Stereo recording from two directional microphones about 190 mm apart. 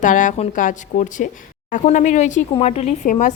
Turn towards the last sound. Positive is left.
turn(degrees=40)  # may be behind; listen again after turning